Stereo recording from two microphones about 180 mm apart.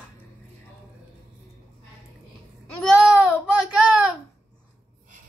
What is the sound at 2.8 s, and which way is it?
Babbling, 5° right (ahead or behind).